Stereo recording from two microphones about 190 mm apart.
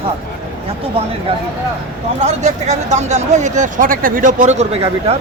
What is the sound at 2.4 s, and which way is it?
Speech, 40° right (ahead or behind).